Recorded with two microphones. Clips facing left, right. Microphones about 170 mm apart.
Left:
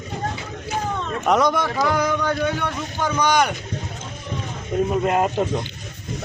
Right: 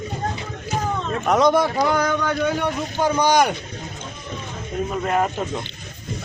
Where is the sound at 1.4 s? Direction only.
30° right (ahead or behind).